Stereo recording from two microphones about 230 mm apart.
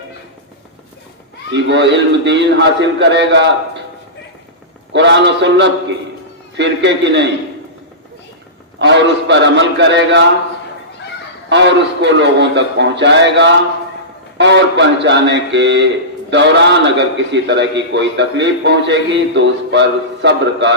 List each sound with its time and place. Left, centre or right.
1.5 s a man's voice: right
4.9 s a man's voice: right
8.8 s a man's voice: right
11.4 s a man's voice: right